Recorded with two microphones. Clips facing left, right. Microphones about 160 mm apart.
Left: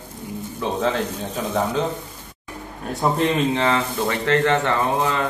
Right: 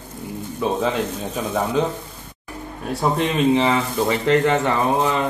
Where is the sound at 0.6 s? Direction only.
10° right (ahead or behind).